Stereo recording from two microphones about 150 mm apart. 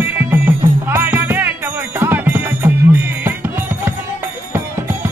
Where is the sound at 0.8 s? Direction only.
15° right (ahead or behind).